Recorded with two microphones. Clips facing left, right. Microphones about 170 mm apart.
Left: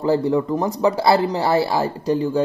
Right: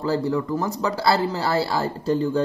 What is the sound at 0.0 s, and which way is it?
Speech, 20° left (ahead or behind).